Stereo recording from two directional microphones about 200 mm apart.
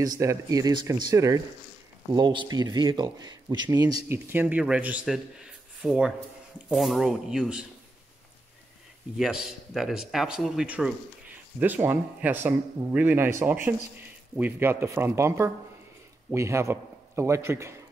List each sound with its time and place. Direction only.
0.0 s a man's voice: 15° right (ahead or behind)
9.1 s a man's voice: 5° right (ahead or behind)